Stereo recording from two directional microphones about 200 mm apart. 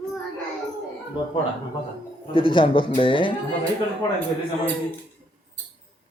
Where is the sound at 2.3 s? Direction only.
25° left (ahead or behind).